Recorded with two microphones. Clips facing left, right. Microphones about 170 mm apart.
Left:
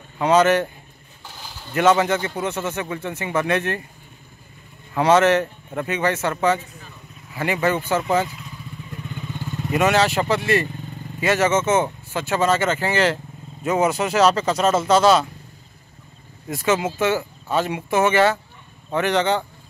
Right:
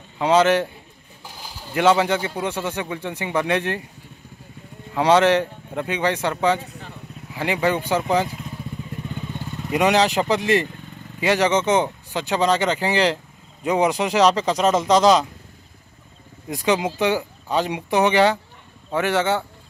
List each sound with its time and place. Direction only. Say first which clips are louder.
0.2 s speech: even; 10° right (ahead or behind)
4.9 s speech: even; 15° right (ahead or behind)
6.6 s vehicle: right 5 dB; 70° right (ahead or behind)
7.3 s speech: even; 15° right (ahead or behind)
8.3 s vehicle: right 5 dB; 45° right (ahead or behind)
9.7 s speech: even; 15° right (ahead or behind)
16.4 s speech: even; 15° right (ahead or behind)